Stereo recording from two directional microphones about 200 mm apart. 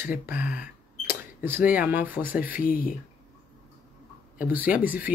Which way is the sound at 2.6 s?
45° left (ahead or behind).